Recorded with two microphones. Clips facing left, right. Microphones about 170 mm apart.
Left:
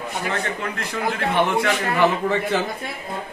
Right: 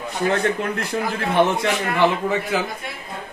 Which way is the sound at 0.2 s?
40° right (ahead or behind).